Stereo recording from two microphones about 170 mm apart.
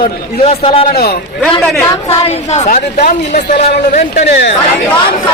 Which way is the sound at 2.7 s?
50° left (ahead or behind).